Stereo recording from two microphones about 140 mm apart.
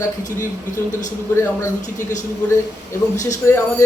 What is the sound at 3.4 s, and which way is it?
Speech, 20° left (ahead or behind).